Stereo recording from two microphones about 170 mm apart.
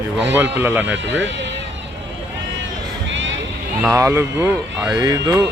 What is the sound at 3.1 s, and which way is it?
Music, 90° right.